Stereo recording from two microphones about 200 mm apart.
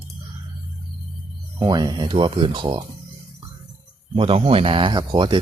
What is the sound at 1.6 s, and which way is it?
Speech, 20° right (ahead or behind).